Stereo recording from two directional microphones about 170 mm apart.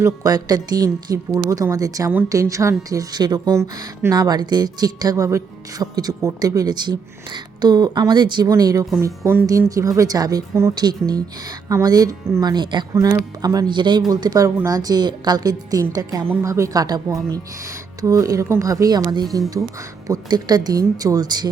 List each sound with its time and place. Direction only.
0.0 s speech: 20° right (ahead or behind)